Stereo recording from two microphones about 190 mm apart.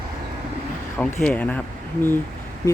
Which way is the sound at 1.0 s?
5° left (ahead or behind).